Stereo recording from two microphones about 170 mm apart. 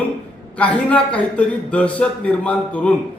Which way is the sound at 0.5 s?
10° left (ahead or behind).